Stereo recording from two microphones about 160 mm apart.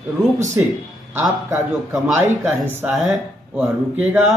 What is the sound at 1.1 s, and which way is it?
Speech, 15° right (ahead or behind).